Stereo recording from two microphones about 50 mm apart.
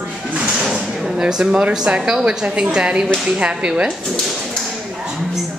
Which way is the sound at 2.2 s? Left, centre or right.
Centre.